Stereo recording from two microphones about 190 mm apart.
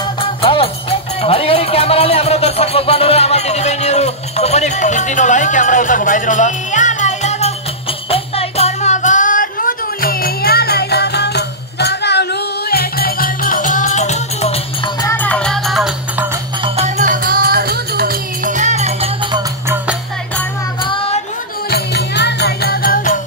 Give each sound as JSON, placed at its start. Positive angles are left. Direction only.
{"t": 0.4, "sound": "music", "side_deg": 30}
{"t": 15.0, "sound": "music", "side_deg": 10}
{"t": 16.6, "sound": "music", "side_deg": -35}
{"t": 20.8, "sound": "music", "side_deg": 30}
{"t": 21.6, "sound": "music", "side_deg": 60}